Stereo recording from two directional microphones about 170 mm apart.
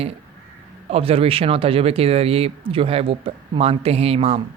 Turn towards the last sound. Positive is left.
turn(degrees=-35)  # may be behind; listen again after turning